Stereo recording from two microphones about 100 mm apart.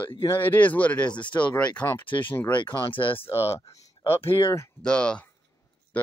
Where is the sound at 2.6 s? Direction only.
55° left (ahead or behind).